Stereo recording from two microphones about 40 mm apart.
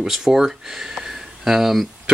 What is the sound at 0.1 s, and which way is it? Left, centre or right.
Speech, centre.